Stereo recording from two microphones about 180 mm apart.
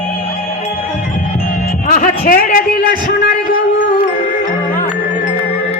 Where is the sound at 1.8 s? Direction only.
55° left (ahead or behind).